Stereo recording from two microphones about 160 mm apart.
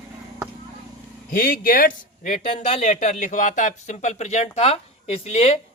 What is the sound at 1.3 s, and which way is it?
Speech, 60° left (ahead or behind).